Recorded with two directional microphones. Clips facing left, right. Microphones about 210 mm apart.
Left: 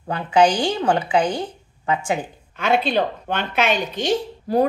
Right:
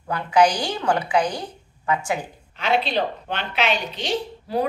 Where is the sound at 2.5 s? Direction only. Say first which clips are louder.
Left 3 dB; 50° left (ahead or behind).